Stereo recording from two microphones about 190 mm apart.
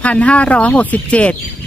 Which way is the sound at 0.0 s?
5° left (ahead or behind).